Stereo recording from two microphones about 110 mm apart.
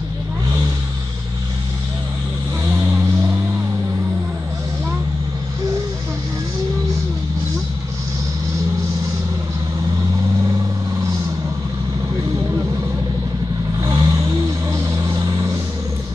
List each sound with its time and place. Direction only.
2.6 s vehicle: 25° right (ahead or behind)
13.7 s vehicle: 30° right (ahead or behind)